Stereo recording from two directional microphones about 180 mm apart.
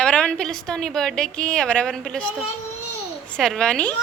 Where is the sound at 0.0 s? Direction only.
5° left (ahead or behind).